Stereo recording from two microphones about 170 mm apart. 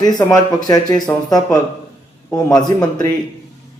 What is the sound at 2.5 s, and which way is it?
Speech, 25° left (ahead or behind).